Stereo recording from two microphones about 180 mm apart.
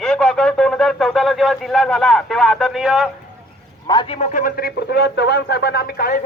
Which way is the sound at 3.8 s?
25° left (ahead or behind).